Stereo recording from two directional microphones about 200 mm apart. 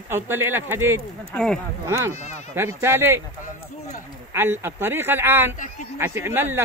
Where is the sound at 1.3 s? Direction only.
5° left (ahead or behind).